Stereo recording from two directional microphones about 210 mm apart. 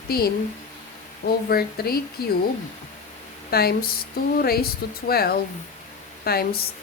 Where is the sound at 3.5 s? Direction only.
45° left (ahead or behind).